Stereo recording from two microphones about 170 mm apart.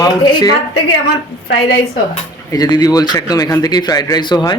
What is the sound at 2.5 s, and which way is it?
A man's voice, 25° left (ahead or behind).